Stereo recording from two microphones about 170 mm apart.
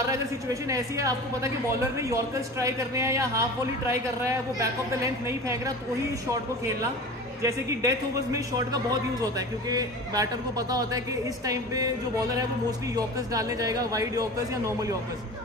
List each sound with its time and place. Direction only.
0.1 s a man's voice: 20° right (ahead or behind)
7.4 s a man's voice: 20° right (ahead or behind)
12.9 s a man's voice: 20° right (ahead or behind)